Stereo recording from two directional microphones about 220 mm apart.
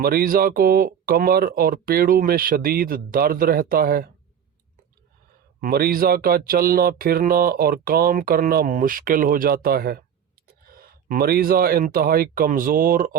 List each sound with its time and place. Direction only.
0.0 s speech: 45° right (ahead or behind)
5.5 s speech: 45° right (ahead or behind)